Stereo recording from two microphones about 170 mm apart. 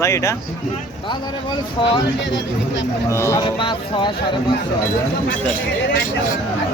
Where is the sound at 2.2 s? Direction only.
90° left.